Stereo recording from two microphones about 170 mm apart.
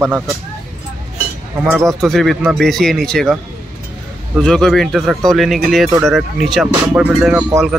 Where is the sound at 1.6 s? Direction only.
15° right (ahead or behind).